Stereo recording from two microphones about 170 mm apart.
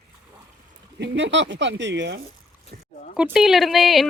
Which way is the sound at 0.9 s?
90° right.